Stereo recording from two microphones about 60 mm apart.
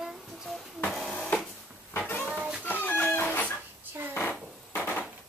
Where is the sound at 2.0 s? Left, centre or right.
Left.